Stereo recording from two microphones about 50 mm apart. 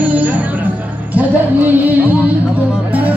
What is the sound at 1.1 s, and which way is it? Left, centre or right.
Music, right.